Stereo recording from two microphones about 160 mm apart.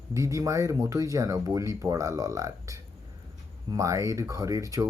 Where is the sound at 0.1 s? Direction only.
20° right (ahead or behind).